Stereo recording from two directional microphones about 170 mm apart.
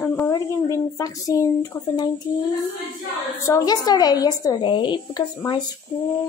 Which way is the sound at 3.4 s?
20° left (ahead or behind).